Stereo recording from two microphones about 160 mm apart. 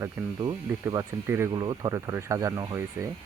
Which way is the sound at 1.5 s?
25° right (ahead or behind).